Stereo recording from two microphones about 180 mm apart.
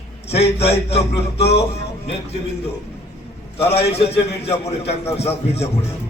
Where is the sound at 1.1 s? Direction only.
65° left (ahead or behind).